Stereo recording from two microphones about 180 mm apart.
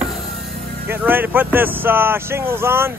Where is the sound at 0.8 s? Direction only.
10° right (ahead or behind).